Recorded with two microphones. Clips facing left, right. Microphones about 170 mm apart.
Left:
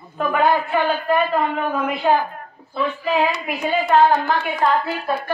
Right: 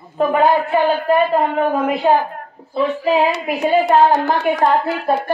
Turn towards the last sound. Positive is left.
turn(degrees=-40)  # may be behind; listen again after turning